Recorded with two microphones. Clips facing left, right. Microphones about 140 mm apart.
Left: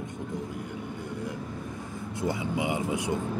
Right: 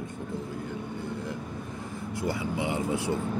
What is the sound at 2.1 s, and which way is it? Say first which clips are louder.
Speech: left 1 dB; 20° left (ahead or behind).